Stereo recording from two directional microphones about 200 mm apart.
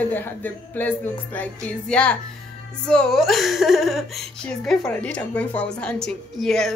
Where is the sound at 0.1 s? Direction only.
10° left (ahead or behind).